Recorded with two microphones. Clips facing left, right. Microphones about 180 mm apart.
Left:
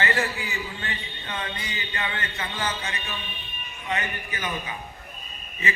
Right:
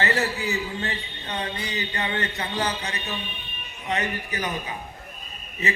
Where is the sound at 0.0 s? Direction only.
40° right (ahead or behind).